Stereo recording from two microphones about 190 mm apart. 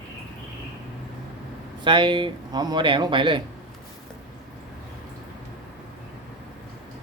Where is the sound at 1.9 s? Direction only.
25° right (ahead or behind).